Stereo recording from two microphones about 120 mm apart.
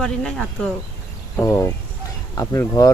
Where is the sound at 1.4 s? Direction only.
25° left (ahead or behind).